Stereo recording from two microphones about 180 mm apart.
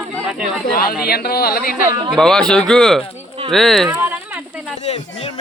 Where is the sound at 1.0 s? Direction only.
60° left (ahead or behind).